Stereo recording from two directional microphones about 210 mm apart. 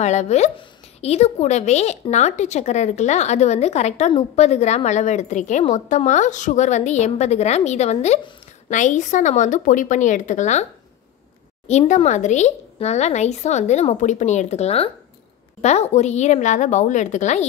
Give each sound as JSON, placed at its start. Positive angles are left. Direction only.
{"t": 0.0, "sound": "a woman's voice", "side_deg": 35}